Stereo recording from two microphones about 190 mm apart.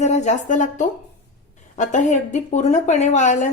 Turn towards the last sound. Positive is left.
turn(degrees=40)  # may be behind; listen again after turning